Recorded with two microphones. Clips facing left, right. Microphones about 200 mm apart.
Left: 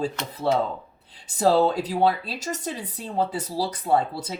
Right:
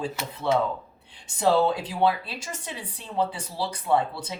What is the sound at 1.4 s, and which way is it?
Speech, 40° left (ahead or behind).